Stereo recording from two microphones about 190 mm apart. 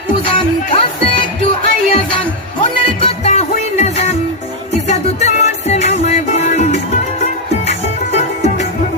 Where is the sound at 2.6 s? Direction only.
30° left (ahead or behind).